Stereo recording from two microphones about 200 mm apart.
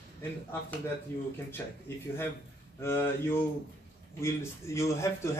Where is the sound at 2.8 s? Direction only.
10° left (ahead or behind).